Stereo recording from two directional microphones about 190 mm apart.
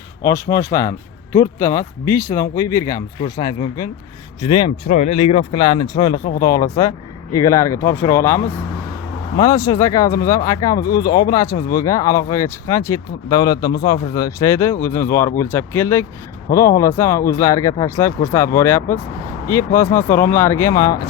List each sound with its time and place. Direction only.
0.3 s speech: 15° left (ahead or behind)
4.9 s speech: 35° left (ahead or behind); by 21.1 s 20° left (ahead or behind)